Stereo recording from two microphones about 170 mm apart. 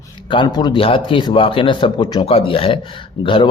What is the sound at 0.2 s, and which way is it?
A man's voice, 30° left (ahead or behind).